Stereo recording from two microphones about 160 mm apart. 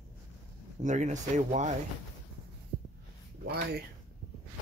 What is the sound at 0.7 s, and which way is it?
Speech, 50° right (ahead or behind).